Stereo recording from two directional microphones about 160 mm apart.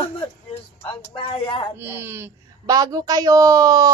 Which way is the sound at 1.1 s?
30° left (ahead or behind).